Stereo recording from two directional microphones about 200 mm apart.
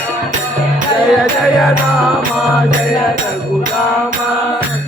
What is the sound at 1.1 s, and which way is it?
Music, centre (ahead or behind).